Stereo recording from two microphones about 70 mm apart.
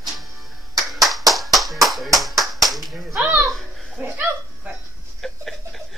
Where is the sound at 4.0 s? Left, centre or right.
Right.